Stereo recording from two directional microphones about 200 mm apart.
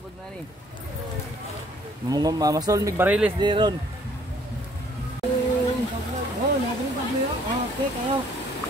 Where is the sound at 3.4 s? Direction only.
20° right (ahead or behind).